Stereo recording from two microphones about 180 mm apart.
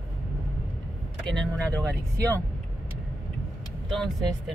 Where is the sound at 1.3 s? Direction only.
5° left (ahead or behind).